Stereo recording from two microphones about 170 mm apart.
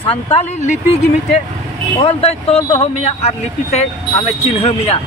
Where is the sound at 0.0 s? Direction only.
35° left (ahead or behind).